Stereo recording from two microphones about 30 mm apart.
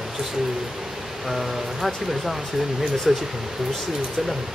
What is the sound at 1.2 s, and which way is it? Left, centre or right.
Speech, centre.